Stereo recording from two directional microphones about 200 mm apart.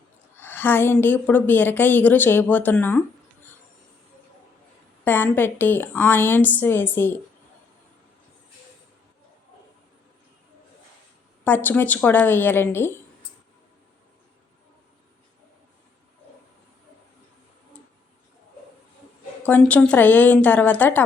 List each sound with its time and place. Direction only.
0.3 s a woman's voice: 10° left (ahead or behind)
5.0 s a woman's voice: 10° left (ahead or behind)
11.4 s a woman's voice: 10° left (ahead or behind)
19.4 s a woman's voice: 10° left (ahead or behind)